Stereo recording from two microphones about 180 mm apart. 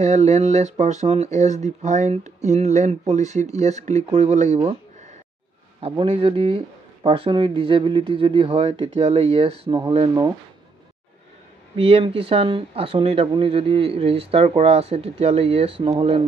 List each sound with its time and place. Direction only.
0.0 s speech: 40° right (ahead or behind)
5.8 s speech: 30° right (ahead or behind)
11.7 s speech: 30° right (ahead or behind)